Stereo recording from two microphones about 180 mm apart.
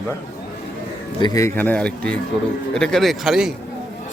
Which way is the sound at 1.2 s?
20° left (ahead or behind).